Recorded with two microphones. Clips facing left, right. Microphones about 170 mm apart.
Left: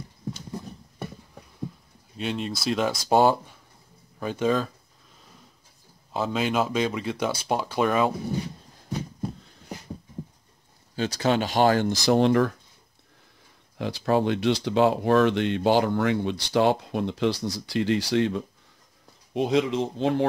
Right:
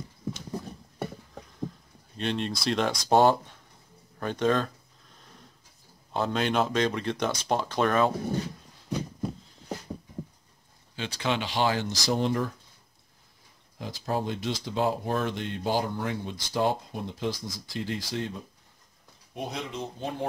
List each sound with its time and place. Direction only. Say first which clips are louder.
2.1 s speech: even; 5° left (ahead or behind)
6.1 s speech: left 1 dB; 5° left (ahead or behind)
11.0 s speech: left 6 dB; 40° left (ahead or behind); by 12.5 s 75° left (ahead or behind)
13.7 s speech: left 7 dB; 75° left (ahead or behind); by 20.2 s 90° left